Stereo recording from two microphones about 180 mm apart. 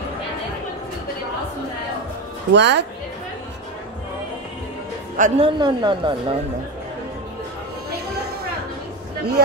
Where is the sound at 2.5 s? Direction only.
70° right (ahead or behind).